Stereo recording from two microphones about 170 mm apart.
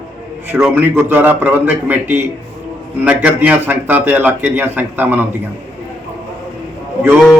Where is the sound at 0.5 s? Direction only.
10° right (ahead or behind).